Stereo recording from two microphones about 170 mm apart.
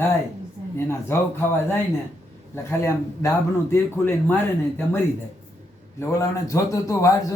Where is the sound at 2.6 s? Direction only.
15° left (ahead or behind).